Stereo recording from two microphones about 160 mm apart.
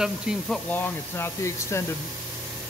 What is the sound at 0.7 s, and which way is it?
Speech, 15° left (ahead or behind).